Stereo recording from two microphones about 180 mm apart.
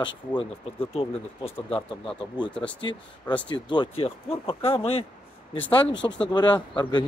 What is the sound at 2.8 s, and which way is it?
Speech, 25° left (ahead or behind).